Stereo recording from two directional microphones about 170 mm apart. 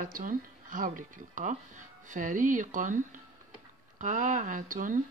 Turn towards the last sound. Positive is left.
turn(degrees=-50)  # may be behind; listen again after turning